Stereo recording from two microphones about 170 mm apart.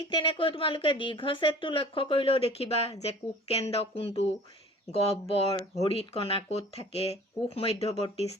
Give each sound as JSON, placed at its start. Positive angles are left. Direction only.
{"t": 0.0, "sound": "speech", "side_deg": 30}
{"t": 5.3, "sound": "speech", "side_deg": 35}